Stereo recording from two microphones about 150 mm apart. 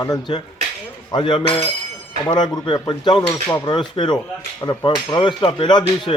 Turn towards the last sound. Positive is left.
turn(degrees=30)  # may be behind; listen again after turning